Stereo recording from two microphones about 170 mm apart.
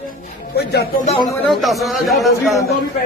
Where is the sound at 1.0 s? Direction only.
30° left (ahead or behind).